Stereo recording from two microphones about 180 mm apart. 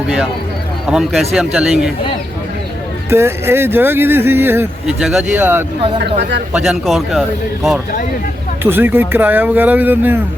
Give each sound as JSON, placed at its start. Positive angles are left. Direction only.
{"t": 0.9, "sound": "a man's voice", "side_deg": 0}
{"t": 3.1, "sound": "speech", "side_deg": -15}
{"t": 6.0, "sound": "speech", "side_deg": -70}
{"t": 6.5, "sound": "a man's voice", "side_deg": 0}
{"t": 8.6, "sound": "speech", "side_deg": -10}